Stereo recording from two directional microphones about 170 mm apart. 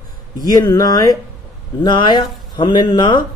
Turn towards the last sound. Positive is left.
turn(degrees=25)  # may be behind; listen again after turning